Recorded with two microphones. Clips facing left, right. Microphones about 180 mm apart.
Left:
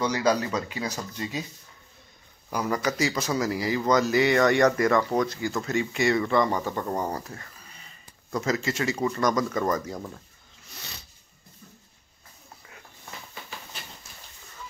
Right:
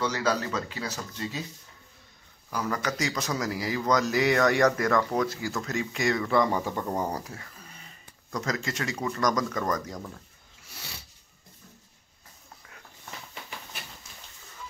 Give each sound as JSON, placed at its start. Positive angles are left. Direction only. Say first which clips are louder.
{"t": 0.0, "sound": "speech", "louder": "left 3 dB", "side_deg": 15}
{"t": 2.5, "sound": "speech", "louder": "left 3 dB", "side_deg": 15}
{"t": 8.3, "sound": "speech", "louder": "left 4 dB", "side_deg": 5}
{"t": 10.7, "sound": "a sound", "louder": "even", "side_deg": -10}